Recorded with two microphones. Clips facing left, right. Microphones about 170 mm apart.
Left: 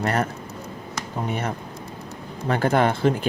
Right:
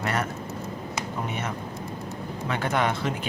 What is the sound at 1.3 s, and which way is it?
Speech, 35° left (ahead or behind).